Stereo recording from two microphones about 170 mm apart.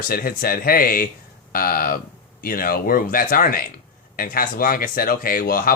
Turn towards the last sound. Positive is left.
turn(degrees=60)  # may be behind; listen again after turning